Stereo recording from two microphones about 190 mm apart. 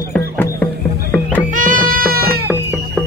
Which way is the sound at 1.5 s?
45° right (ahead or behind).